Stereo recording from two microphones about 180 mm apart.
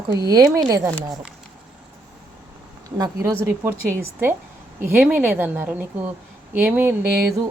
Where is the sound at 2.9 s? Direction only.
20° right (ahead or behind).